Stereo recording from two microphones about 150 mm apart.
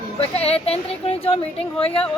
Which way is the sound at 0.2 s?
40° left (ahead or behind).